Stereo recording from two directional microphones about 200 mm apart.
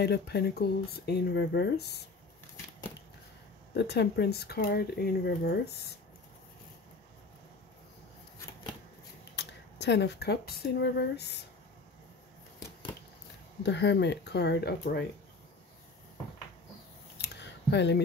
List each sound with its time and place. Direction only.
0.0 s speech: 55° left (ahead or behind)
3.7 s speech: 55° left (ahead or behind)
9.3 s speech: 60° left (ahead or behind)
13.6 s speech: 60° left (ahead or behind)
17.2 s a sound: 60° left (ahead or behind)